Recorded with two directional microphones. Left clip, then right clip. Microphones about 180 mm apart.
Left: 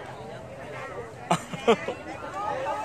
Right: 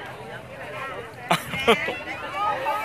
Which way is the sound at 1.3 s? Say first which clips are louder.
Right 3 dB; centre (ahead or behind).